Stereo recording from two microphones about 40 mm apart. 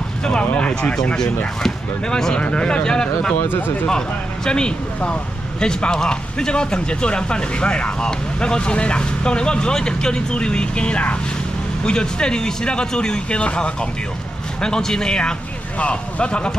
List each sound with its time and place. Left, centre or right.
0.2 s speech: left
1.6 s speech: centre
2.3 s speech: left
3.3 s speech: left
4.5 s speech: left
5.7 s speech: centre